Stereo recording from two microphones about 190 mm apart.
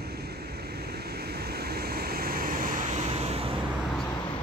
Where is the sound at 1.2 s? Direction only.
55° right (ahead or behind); by 3.5 s 30° right (ahead or behind).